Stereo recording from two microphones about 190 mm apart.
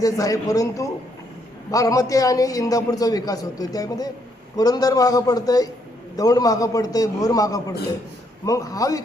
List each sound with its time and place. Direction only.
0.0 s a man's voice: 20° left (ahead or behind)